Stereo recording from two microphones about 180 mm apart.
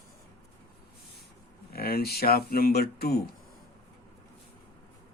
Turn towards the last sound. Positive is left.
turn(degrees=60)  # may be behind; listen again after turning